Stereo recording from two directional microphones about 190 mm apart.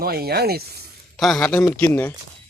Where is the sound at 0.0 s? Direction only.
55° right (ahead or behind).